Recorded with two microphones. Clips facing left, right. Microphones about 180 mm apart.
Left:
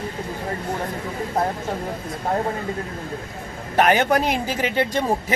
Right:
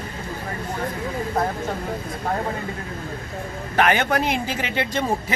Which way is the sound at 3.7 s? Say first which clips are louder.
Left 2 dB; 40° left (ahead or behind).